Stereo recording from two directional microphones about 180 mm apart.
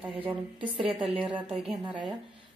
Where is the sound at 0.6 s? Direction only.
30° right (ahead or behind).